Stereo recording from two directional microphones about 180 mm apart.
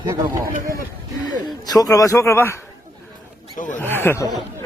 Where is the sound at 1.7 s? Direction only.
20° left (ahead or behind).